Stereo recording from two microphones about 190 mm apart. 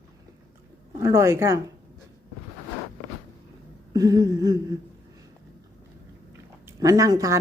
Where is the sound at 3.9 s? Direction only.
20° right (ahead or behind).